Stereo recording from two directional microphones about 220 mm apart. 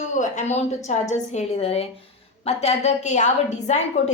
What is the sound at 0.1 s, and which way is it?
A woman's voice, 35° left (ahead or behind).